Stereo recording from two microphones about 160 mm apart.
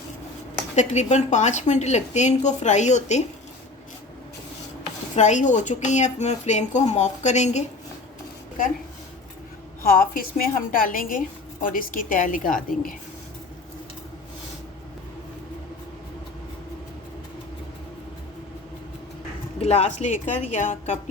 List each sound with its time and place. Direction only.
0.8 s a woman's voice: 45° left (ahead or behind)
5.1 s a woman's voice: 50° left (ahead or behind)
9.8 s a woman's voice: 65° left (ahead or behind)
19.5 s a woman's voice: 40° left (ahead or behind)